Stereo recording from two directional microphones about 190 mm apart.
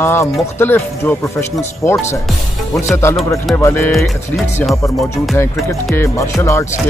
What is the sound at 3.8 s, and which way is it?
Speech, centre (ahead or behind).